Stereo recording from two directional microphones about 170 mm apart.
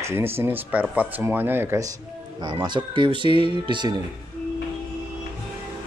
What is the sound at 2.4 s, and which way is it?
Speech, 25° right (ahead or behind).